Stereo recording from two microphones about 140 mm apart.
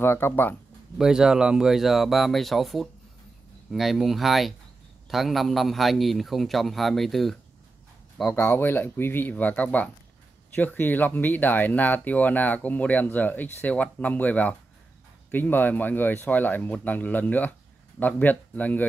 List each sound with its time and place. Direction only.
0.0 s speech: 15° left (ahead or behind)
0.9 s a man's voice: 5° right (ahead or behind)
8.4 s speech: 15° left (ahead or behind)